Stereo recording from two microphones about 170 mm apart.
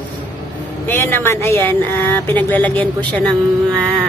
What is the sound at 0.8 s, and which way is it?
Speech, 15° left (ahead or behind).